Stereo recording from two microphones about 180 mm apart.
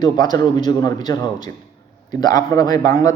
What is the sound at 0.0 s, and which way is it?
A man's voice, 20° left (ahead or behind).